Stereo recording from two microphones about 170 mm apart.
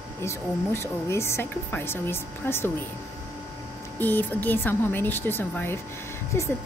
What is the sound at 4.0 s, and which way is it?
Speech, 10° left (ahead or behind).